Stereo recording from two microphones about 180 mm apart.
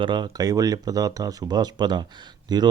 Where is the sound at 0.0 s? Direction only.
25° right (ahead or behind).